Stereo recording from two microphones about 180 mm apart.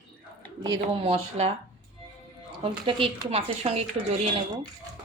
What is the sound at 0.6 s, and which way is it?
Speech, 30° right (ahead or behind).